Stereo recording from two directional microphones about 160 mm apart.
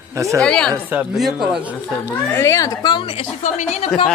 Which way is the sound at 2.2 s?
15° left (ahead or behind).